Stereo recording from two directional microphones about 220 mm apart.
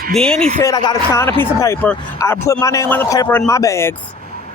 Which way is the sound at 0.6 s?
15° left (ahead or behind).